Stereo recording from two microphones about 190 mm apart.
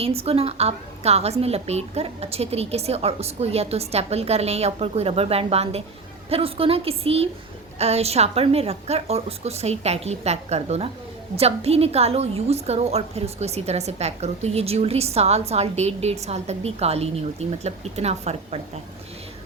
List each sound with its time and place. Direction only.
0.0 s a woman's voice: 30° right (ahead or behind)